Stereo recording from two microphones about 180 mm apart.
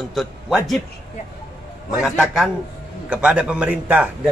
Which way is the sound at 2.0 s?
5° right (ahead or behind).